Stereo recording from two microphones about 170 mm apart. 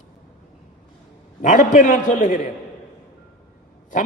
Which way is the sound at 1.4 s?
50° left (ahead or behind).